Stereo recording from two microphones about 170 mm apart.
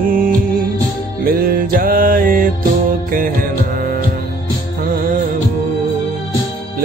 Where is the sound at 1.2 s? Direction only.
55° right (ahead or behind).